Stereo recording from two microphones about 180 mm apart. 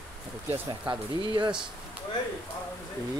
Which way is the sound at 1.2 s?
25° right (ahead or behind).